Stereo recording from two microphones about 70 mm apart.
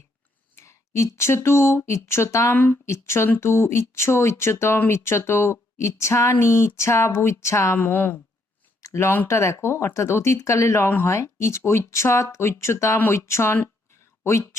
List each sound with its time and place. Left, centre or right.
0.5 s speech: left
8.8 s a sound: left
9.2 s speech: left